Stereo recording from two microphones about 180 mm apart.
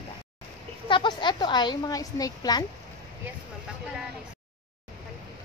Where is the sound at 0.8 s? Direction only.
25° left (ahead or behind).